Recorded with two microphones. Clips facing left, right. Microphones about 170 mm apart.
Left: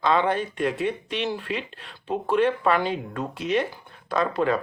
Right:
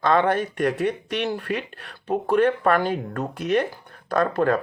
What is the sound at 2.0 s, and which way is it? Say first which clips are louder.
Speech: right 2 dB; 45° right (ahead or behind).